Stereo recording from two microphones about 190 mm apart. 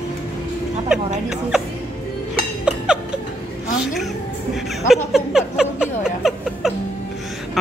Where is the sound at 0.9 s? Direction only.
5° right (ahead or behind).